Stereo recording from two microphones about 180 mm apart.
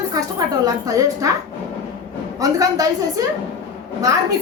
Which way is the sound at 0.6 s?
20° right (ahead or behind).